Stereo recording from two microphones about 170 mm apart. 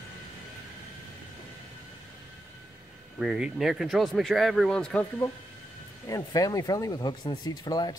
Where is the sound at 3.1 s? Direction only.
5° right (ahead or behind).